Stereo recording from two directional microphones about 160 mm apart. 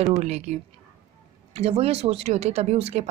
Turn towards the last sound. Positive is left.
turn(degrees=-40)  # may be behind; listen again after turning